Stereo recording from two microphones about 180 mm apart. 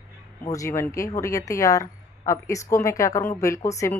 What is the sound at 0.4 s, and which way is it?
Speech, 20° left (ahead or behind).